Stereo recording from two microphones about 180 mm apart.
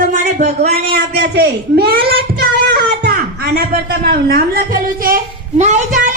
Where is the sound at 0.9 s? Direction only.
65° right (ahead or behind); by 5.8 s 40° right (ahead or behind).